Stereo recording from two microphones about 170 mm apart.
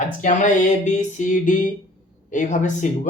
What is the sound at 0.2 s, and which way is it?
Speech, 45° left (ahead or behind).